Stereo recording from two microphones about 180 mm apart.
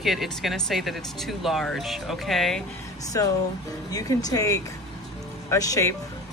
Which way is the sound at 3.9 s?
20° left (ahead or behind).